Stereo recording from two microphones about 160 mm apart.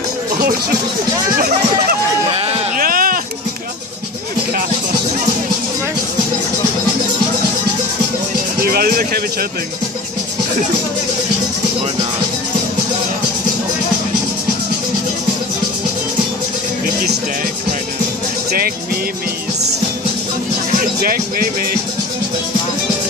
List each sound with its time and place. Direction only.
0.4 s speech: 70° right (ahead or behind)
2.8 s a sound: 60° right (ahead or behind)
8.5 s music: 70° right (ahead or behind)
21.0 s speech: 65° right (ahead or behind)